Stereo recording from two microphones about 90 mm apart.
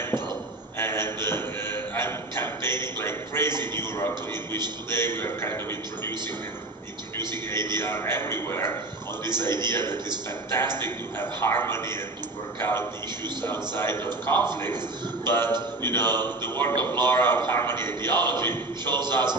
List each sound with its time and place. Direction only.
0.7 s a sound: 25° left (ahead or behind)
4.9 s a man's voice: 25° left (ahead or behind)
7.7 s a man's voice: 30° left (ahead or behind)